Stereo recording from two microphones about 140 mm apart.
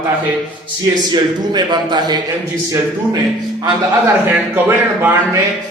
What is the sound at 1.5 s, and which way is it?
Speech, 30° right (ahead or behind).